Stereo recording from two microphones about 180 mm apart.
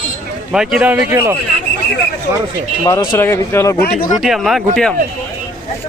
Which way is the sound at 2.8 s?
20° left (ahead or behind).